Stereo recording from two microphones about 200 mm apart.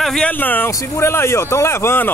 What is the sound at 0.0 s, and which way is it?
Speech, 5° left (ahead or behind).